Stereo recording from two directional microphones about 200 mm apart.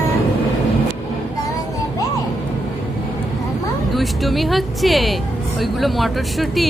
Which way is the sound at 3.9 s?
Centre (ahead or behind).